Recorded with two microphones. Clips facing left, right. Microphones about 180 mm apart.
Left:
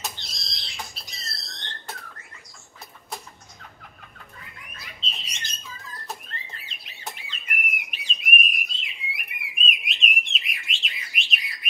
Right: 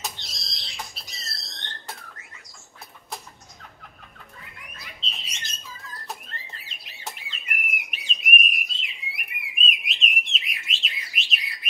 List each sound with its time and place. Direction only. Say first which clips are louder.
0.0 s a sound: even; centre (ahead or behind)
4.7 s bird: left 1 dB; centre (ahead or behind)
6.6 s bird: right 1 dB; centre (ahead or behind)